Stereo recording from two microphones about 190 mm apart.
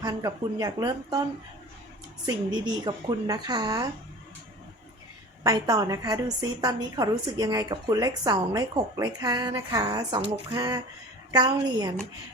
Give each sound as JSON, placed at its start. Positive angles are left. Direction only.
{"t": 0.0, "sound": "a woman's voice", "side_deg": -20}
{"t": 2.6, "sound": "a woman's voice", "side_deg": -20}
{"t": 5.4, "sound": "a woman's voice", "side_deg": -20}